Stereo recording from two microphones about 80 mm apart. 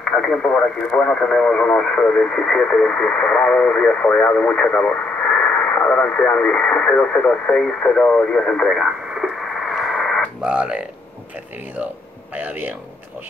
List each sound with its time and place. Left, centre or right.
0.0 s speech: centre
8.7 s radio: centre
10.4 s speech: centre
12.4 s a man's voice: right